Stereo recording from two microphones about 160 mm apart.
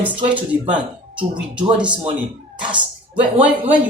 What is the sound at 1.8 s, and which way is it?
Speech, 30° right (ahead or behind).